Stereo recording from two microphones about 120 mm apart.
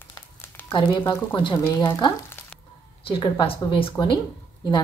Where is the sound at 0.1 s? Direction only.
20° left (ahead or behind).